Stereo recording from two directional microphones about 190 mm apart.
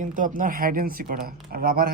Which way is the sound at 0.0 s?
45° right (ahead or behind).